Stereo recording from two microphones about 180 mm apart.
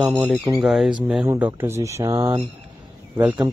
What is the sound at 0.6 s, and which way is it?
Speech, centre (ahead or behind).